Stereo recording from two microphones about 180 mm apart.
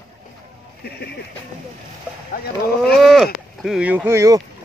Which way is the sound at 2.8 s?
Centre (ahead or behind).